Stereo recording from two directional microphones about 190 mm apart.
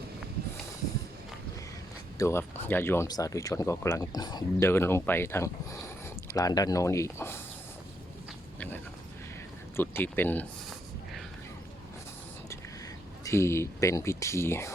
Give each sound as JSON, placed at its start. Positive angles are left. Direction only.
{"t": 2.1, "sound": "speech", "side_deg": 15}
{"t": 8.5, "sound": "a sound", "side_deg": 10}
{"t": 9.7, "sound": "speech", "side_deg": 10}
{"t": 13.2, "sound": "speech", "side_deg": 15}